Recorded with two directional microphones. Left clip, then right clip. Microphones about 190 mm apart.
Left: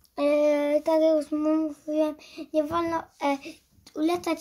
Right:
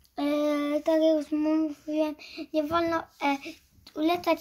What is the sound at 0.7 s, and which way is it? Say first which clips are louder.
Child singing: left 2 dB; 55° left (ahead or behind).